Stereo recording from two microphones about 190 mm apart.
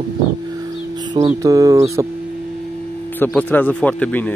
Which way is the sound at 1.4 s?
20° right (ahead or behind).